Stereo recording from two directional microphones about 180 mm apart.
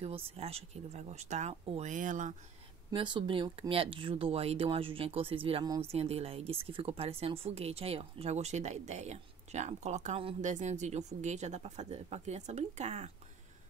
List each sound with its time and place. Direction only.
0.0 s speech: 35° right (ahead or behind)
2.9 s speech: 25° right (ahead or behind)